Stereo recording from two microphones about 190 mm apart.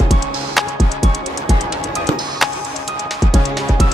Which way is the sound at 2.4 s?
Centre (ahead or behind).